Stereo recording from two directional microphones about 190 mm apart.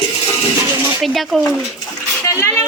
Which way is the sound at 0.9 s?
Centre (ahead or behind).